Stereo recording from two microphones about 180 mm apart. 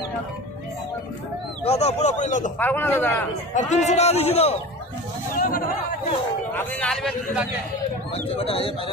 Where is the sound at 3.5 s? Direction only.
40° left (ahead or behind).